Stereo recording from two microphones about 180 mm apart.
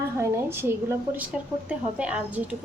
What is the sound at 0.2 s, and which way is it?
A woman's voice, 15° right (ahead or behind).